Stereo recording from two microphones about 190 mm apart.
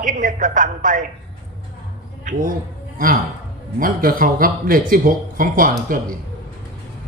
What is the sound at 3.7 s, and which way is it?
A man's voice, 50° right (ahead or behind).